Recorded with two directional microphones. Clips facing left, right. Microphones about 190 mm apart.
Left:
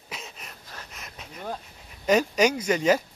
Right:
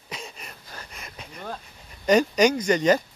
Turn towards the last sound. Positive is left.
turn(degrees=5)  # may be behind; listen again after turning